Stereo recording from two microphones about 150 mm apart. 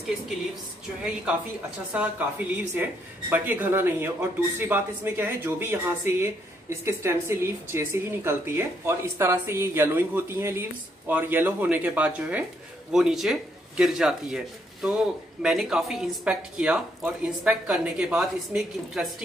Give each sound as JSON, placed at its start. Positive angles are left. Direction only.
{"t": 2.0, "sound": "speech", "side_deg": -10}